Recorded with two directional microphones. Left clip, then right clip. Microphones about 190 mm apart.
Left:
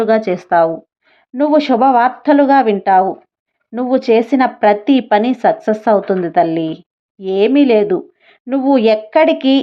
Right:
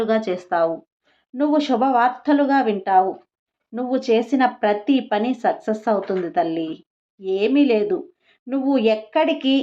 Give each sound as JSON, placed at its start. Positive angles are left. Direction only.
{"t": 0.0, "sound": "speech", "side_deg": 30}